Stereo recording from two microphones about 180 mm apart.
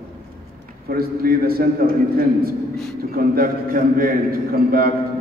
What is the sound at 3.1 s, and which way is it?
A man's voice, 55° right (ahead or behind).